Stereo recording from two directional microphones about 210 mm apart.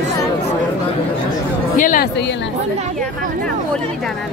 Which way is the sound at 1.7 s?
40° left (ahead or behind).